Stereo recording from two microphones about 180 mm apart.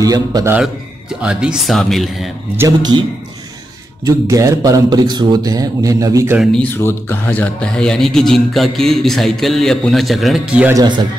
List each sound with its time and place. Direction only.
0.0 s speech: 20° right (ahead or behind)
1.2 s speech: 5° right (ahead or behind)
2.5 s speech: 20° right (ahead or behind)
6.3 s a man's voice: centre (ahead or behind)